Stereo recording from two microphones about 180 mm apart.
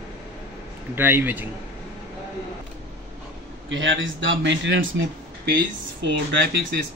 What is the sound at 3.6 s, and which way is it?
Speech, 90° right.